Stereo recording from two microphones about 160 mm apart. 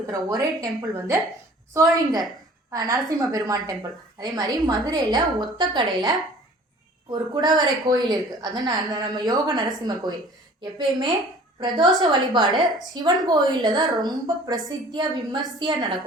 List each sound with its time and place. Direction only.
0.1 s a woman's voice: 25° right (ahead or behind)